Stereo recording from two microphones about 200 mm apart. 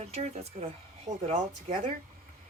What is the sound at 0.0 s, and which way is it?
Speech, 30° right (ahead or behind).